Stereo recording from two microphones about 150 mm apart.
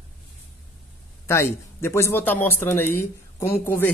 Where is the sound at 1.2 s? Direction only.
15° left (ahead or behind).